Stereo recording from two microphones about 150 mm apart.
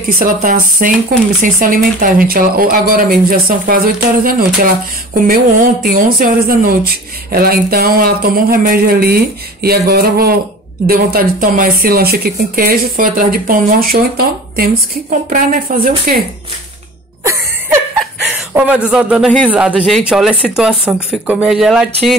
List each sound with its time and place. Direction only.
0.1 s speech: 65° right (ahead or behind)
7.3 s speech: 90° right
10.9 s speech: 75° right (ahead or behind)
15.2 s speech: 65° right (ahead or behind)
17.2 s music: 15° right (ahead or behind)
18.5 s a man's voice: 10° right (ahead or behind)